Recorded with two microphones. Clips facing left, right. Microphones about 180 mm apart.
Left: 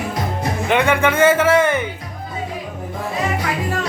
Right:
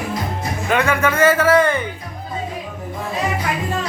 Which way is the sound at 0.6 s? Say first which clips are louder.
Left 1 dB; 20° left (ahead or behind).